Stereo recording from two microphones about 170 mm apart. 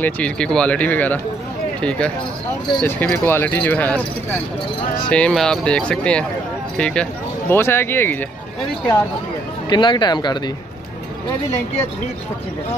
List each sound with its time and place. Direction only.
0.0 s speech: 5° left (ahead or behind)
5.1 s speech: 5° left (ahead or behind)
9.7 s speech: 25° left (ahead or behind)